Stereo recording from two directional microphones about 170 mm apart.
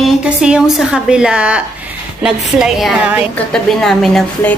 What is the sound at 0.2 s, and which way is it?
A woman's voice, 5° right (ahead or behind).